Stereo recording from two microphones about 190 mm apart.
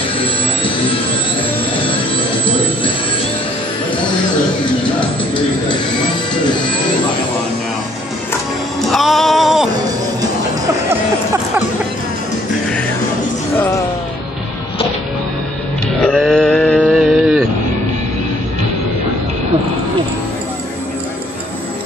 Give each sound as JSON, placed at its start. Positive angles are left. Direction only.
{"t": 5.0, "sound": "bird", "side_deg": 25}
{"t": 8.8, "sound": "music", "side_deg": 0}
{"t": 16.0, "sound": "sheep", "side_deg": 0}
{"t": 16.8, "sound": "a sound", "side_deg": -5}